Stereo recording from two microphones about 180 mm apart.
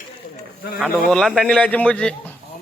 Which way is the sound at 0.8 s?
Centre (ahead or behind).